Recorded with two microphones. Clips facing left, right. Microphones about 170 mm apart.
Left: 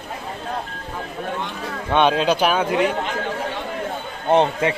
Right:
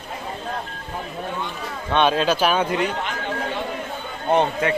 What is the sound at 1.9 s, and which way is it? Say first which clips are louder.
Speech: left 2 dB; 15° left (ahead or behind).